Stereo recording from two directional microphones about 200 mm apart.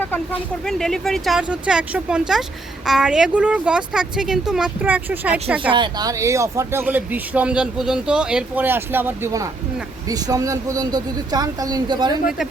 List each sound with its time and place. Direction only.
0.0 s speech: 10° left (ahead or behind); by 5.5 s 5° right (ahead or behind)
5.7 s a woman's voice: 20° right (ahead or behind)